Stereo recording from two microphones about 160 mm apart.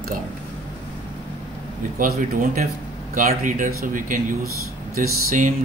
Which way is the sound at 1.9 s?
60° right (ahead or behind).